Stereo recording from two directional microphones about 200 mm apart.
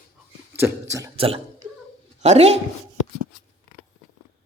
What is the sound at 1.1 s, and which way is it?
A woman's voice, 30° right (ahead or behind).